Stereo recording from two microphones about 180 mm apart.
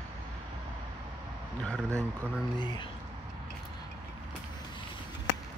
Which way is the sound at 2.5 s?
25° left (ahead or behind).